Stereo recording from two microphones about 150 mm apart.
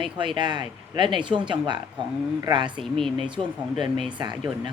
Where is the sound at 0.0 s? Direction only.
35° right (ahead or behind).